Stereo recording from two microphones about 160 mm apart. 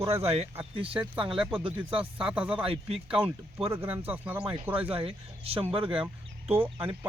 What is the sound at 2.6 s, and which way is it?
Speech, 35° right (ahead or behind).